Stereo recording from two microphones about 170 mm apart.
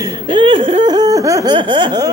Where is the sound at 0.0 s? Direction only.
25° right (ahead or behind).